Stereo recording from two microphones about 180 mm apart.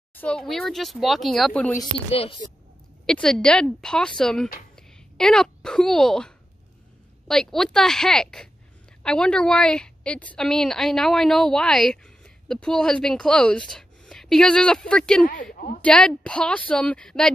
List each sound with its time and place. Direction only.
0.1 s a woman's voice: 5° left (ahead or behind)
2.0 s a woman's voice: 30° left (ahead or behind)
3.1 s a woman's voice: 5° left (ahead or behind)